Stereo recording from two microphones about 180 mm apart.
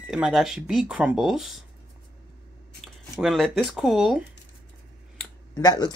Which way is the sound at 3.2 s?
Centre (ahead or behind).